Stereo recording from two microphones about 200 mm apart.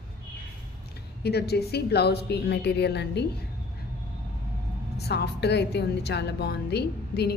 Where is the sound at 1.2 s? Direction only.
55° left (ahead or behind).